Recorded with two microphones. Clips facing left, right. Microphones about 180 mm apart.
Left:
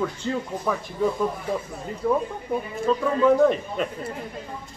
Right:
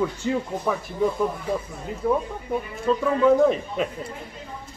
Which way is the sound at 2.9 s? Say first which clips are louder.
Right 1 dB; centre (ahead or behind).